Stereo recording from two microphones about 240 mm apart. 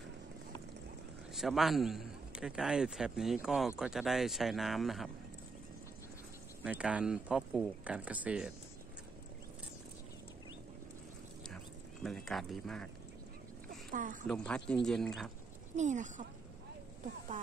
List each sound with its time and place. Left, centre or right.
1.3 s a man's voice: centre
6.6 s speech: centre
11.4 s a sound: centre
13.7 s a sound: right
14.2 s speech: centre
15.7 s speech: right